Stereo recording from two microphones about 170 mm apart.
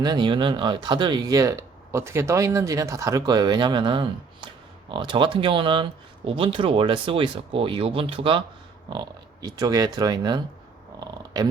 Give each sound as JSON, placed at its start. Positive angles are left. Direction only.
{"t": 0.0, "sound": "speech", "side_deg": -25}